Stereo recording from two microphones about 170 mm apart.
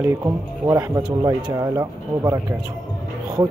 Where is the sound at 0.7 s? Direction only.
20° right (ahead or behind).